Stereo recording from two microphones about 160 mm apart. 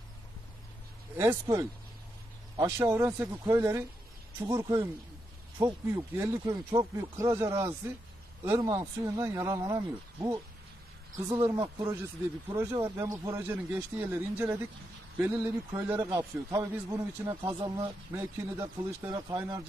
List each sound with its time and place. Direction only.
1.1 s speech: 15° right (ahead or behind)
2.8 s speech: 20° right (ahead or behind)
11.5 s speech: 25° right (ahead or behind)
16.0 s speech: 25° right (ahead or behind)
17.5 s speech: 30° right (ahead or behind)
18.1 s speech: 20° right (ahead or behind)